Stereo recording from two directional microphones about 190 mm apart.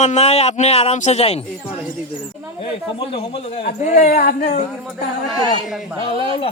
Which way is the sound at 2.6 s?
30° left (ahead or behind).